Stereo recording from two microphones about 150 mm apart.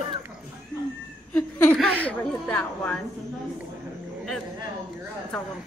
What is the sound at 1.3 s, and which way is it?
A woman's voice, 10° left (ahead or behind).